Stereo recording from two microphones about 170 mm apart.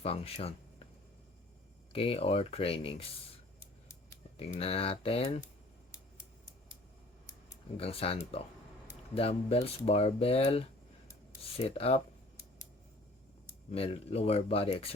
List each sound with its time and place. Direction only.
0.0 s speech: 35° left (ahead or behind)
1.9 s speech: 35° left (ahead or behind)
4.4 s speech: 40° left (ahead or behind)
7.8 s speech: 35° left (ahead or behind)
13.7 s speech: 35° left (ahead or behind)